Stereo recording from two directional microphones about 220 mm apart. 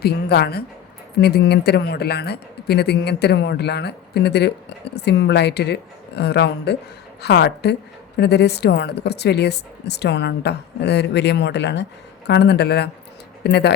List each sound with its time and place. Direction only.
0.0 s a woman's voice: 45° left (ahead or behind)